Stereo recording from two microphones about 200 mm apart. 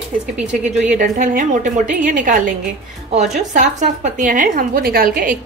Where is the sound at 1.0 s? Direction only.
40° right (ahead or behind).